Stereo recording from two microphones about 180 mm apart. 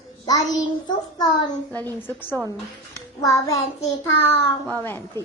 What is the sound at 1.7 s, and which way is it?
Speech, 10° left (ahead or behind).